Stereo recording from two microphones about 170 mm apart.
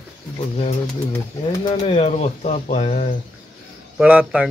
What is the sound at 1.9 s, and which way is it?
Speech, 35° left (ahead or behind).